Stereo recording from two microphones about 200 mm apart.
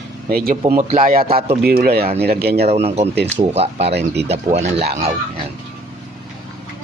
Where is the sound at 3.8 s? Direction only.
55° right (ahead or behind).